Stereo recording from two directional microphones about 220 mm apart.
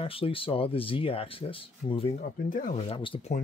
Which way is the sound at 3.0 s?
25° left (ahead or behind).